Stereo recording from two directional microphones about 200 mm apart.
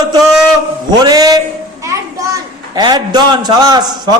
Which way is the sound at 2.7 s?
20° right (ahead or behind).